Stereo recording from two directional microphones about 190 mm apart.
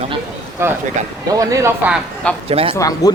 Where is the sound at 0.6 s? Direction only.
15° right (ahead or behind).